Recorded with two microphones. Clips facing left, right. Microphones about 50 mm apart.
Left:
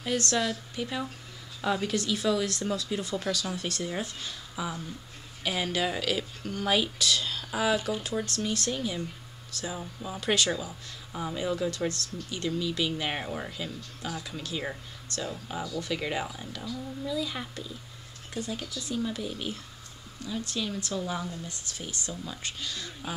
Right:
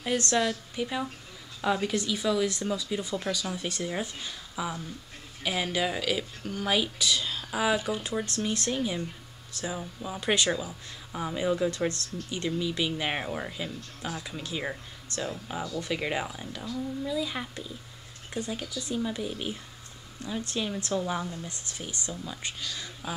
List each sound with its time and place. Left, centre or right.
0.0 s speech: centre
0.5 s speech: centre
10.2 s speech: right
10.5 s speech: centre
11.9 s speech: right
12.4 s speech: centre
15.6 s speech: right
15.9 s speech: centre
22.1 s speech: centre
23.0 s speech: centre